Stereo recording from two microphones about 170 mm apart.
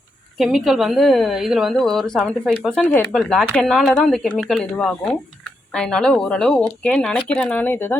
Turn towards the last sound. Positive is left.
turn(degrees=10)  # may be behind; listen again after turning